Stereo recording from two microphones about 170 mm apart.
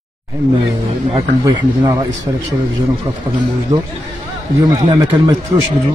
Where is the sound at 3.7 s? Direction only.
20° right (ahead or behind).